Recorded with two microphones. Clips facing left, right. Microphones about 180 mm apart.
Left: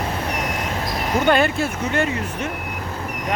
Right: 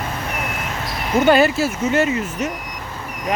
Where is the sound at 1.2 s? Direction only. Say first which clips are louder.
Right 4 dB; 5° right (ahead or behind).